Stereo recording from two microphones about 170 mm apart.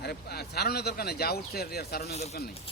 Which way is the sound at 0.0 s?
70° left (ahead or behind).